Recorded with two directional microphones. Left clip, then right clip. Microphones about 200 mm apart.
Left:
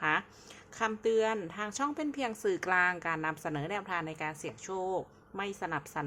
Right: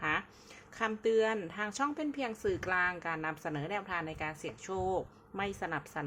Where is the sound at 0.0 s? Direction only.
10° left (ahead or behind).